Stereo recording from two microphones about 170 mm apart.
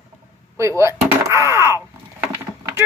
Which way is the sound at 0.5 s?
15° right (ahead or behind).